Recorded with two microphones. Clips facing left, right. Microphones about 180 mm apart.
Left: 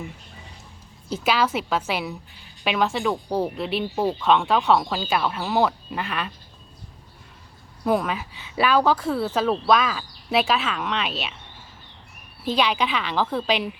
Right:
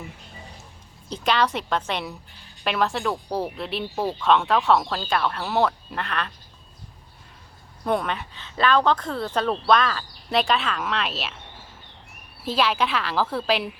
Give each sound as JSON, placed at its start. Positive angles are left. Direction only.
{"t": 1.1, "sound": "speech", "side_deg": 5}
{"t": 7.9, "sound": "speech", "side_deg": 5}
{"t": 12.5, "sound": "speech", "side_deg": 0}